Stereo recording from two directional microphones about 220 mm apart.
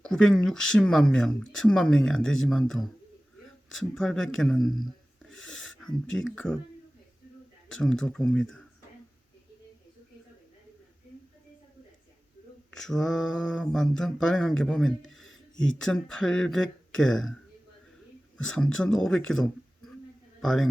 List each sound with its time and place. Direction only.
0.0 s speech: 5° left (ahead or behind)
5.4 s a sound: 5° left (ahead or behind)
6.1 s speech: 5° left (ahead or behind)
7.7 s speech: 5° left (ahead or behind)
12.7 s speech: centre (ahead or behind)
15.1 s a sound: centre (ahead or behind)
15.8 s speech: 5° left (ahead or behind)
18.3 s a man's voice: 5° left (ahead or behind)